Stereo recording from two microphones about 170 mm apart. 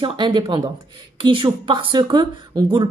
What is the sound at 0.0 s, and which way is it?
A woman's voice, 25° right (ahead or behind).